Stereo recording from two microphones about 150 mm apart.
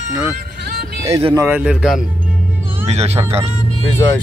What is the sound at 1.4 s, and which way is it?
Speech, 10° right (ahead or behind).